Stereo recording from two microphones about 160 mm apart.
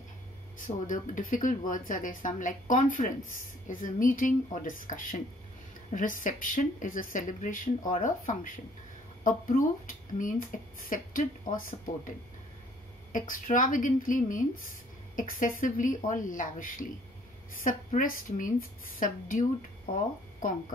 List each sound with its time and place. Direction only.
0.6 s speech: 55° left (ahead or behind)
13.1 s speech: 55° left (ahead or behind)